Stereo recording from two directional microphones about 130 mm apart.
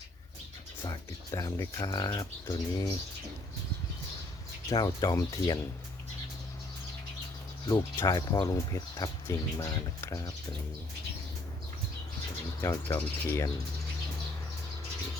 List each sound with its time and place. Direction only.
0.9 s speech: 30° left (ahead or behind)
4.7 s speech: 30° left (ahead or behind)
7.7 s speech: 30° left (ahead or behind)
12.6 s speech: 20° left (ahead or behind)